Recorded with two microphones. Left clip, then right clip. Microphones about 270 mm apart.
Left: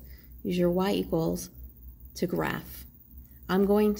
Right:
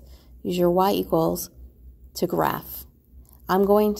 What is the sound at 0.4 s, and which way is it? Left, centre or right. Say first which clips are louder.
A woman's voice: right 7 dB; right.